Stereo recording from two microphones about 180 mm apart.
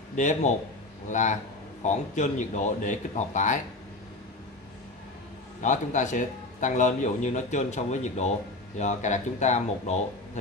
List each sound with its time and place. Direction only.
0.1 s speech: 40° left (ahead or behind)
5.6 s speech: 45° left (ahead or behind)